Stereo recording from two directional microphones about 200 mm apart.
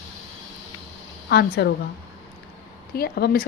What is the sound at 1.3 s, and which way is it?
Speech, 55° left (ahead or behind).